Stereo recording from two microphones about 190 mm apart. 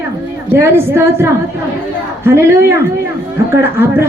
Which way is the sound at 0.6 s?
15° right (ahead or behind).